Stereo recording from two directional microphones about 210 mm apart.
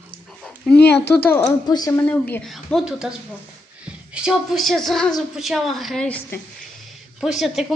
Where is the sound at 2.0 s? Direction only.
5° left (ahead or behind).